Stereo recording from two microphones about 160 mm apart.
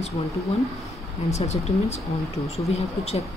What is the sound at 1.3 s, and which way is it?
Speech, 40° left (ahead or behind).